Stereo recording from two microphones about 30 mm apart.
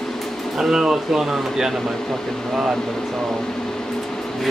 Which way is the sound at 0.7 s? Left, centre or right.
Right.